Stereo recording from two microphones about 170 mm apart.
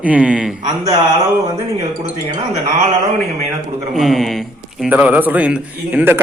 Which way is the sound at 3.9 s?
Centre (ahead or behind).